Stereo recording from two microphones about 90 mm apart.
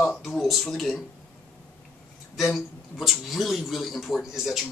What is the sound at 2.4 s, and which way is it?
A man's voice, centre (ahead or behind).